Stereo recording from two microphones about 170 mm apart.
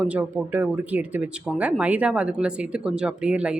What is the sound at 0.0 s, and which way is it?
Speech, 10° right (ahead or behind).